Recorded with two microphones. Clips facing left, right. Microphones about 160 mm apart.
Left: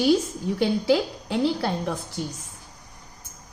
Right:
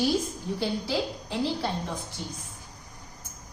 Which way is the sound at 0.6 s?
70° left (ahead or behind).